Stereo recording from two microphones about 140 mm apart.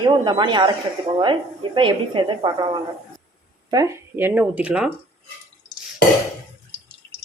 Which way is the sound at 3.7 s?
25° right (ahead or behind).